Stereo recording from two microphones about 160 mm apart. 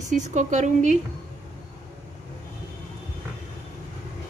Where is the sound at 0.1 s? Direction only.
50° right (ahead or behind).